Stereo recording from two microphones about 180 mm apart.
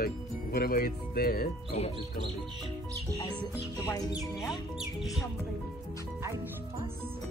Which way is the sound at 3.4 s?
20° left (ahead or behind).